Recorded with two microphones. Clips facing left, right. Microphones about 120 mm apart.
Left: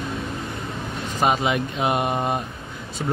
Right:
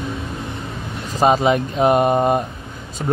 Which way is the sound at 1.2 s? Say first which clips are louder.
Right 6 dB; 35° right (ahead or behind).